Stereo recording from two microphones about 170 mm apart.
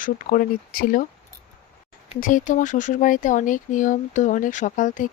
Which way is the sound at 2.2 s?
50° left (ahead or behind).